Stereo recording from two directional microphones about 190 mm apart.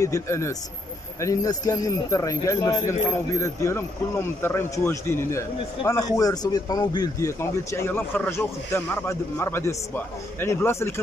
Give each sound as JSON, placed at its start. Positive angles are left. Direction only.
{"t": 0.0, "sound": "a man's voice", "side_deg": 15}